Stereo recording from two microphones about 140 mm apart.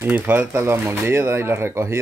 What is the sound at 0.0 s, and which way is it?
Speech, 15° right (ahead or behind).